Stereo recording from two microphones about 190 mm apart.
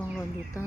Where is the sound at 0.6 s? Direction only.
15° left (ahead or behind).